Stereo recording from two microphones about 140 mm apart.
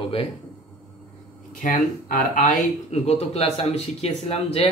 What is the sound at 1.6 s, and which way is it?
Speech, 80° left.